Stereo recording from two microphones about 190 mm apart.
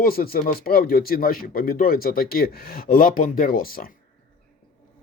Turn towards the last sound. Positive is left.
turn(degrees=50)  # may be behind; listen again after turning